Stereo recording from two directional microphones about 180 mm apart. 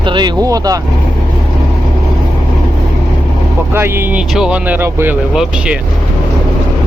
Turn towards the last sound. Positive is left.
turn(degrees=-5)  # may be behind; listen again after turning